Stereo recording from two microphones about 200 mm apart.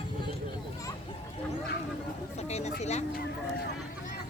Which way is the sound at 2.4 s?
35° left (ahead or behind).